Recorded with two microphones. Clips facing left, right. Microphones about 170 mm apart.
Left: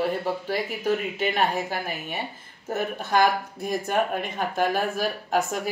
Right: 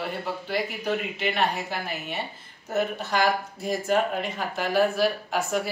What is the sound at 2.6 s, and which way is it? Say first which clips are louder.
Speech: right 1 dB; 50° left (ahead or behind).